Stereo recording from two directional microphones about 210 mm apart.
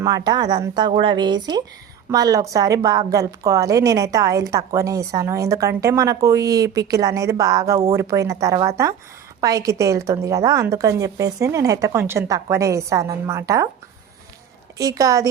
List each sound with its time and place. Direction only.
0.0 s a woman's voice: 20° right (ahead or behind)
14.8 s a woman's voice: 15° right (ahead or behind)